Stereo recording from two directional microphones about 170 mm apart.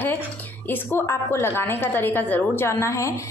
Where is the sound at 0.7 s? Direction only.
10° left (ahead or behind).